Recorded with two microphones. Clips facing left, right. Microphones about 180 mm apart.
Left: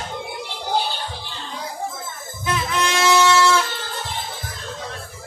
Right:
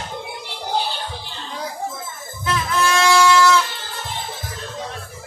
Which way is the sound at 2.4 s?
20° left (ahead or behind).